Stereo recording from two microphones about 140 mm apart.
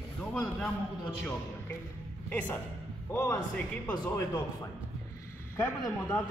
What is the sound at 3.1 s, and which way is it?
A man's voice, 20° left (ahead or behind).